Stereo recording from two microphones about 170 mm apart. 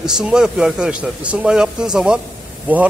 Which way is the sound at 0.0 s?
5° right (ahead or behind).